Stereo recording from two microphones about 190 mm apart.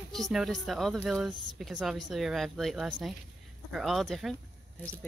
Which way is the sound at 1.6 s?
Centre (ahead or behind).